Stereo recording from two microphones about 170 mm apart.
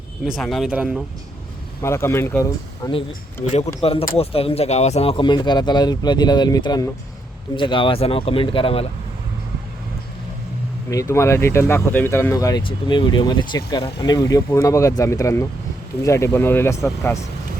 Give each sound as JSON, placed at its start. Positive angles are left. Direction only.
{"t": 0.3, "sound": "speech", "side_deg": 0}
{"t": 1.8, "sound": "speech", "side_deg": 15}
{"t": 3.8, "sound": "speech", "side_deg": 35}
{"t": 10.8, "sound": "speech", "side_deg": 15}